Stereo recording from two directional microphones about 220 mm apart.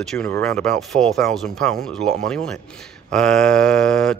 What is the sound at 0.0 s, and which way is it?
Speech, 5° left (ahead or behind).